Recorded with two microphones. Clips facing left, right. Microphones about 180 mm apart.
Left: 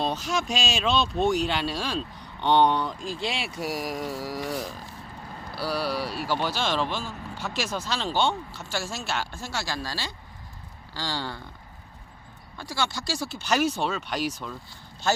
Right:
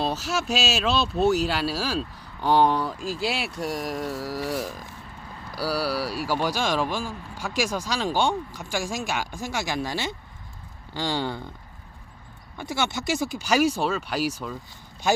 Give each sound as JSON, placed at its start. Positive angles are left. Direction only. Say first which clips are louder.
{"t": 0.0, "sound": "speech", "louder": "right 1 dB", "side_deg": -5}
{"t": 12.5, "sound": "speech", "louder": "right 3 dB", "side_deg": -20}